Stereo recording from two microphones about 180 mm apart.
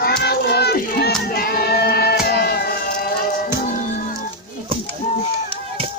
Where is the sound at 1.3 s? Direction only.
55° left (ahead or behind).